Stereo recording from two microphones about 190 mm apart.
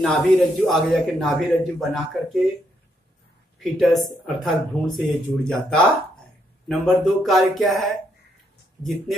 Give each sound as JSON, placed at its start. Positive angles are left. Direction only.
{"t": 0.0, "sound": "a man's voice", "side_deg": 0}
{"t": 3.5, "sound": "a man's voice", "side_deg": 0}